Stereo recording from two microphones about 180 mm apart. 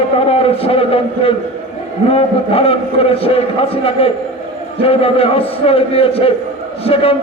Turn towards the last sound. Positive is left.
turn(degrees=30)  # may be behind; listen again after turning